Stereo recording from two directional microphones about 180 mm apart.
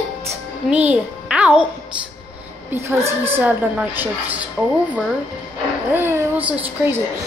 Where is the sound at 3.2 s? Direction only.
10° right (ahead or behind).